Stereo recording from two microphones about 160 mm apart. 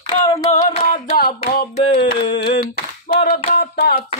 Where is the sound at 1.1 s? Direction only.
65° left (ahead or behind).